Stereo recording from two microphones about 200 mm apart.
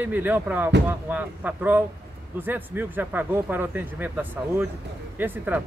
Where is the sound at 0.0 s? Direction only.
10° right (ahead or behind).